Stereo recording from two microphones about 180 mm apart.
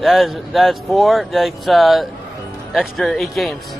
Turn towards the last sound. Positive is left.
turn(degrees=0)  # may be behind; listen again after turning